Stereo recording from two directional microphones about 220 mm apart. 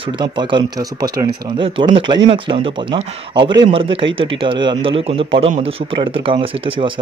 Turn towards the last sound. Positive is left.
turn(degrees=-25)  # may be behind; listen again after turning